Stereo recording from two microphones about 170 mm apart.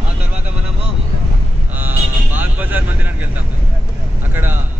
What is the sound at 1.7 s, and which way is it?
Vehicle, 10° right (ahead or behind).